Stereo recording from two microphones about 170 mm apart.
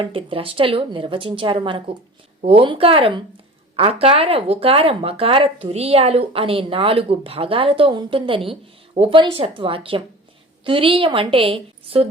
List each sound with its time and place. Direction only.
0.0 s speech: 30° right (ahead or behind)